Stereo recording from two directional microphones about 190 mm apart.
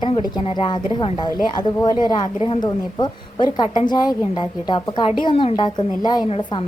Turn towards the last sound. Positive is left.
turn(degrees=25)  # may be behind; listen again after turning